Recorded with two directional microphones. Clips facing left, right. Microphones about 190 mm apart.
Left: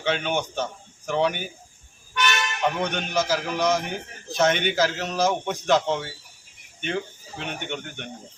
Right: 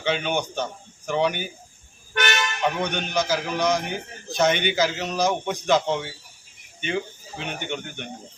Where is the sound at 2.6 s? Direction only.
Centre (ahead or behind).